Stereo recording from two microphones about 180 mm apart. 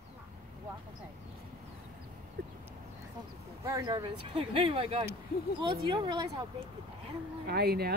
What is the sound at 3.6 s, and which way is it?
Speech, 20° right (ahead or behind).